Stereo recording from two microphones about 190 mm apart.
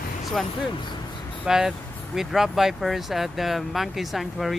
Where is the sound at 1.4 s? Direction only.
5° right (ahead or behind).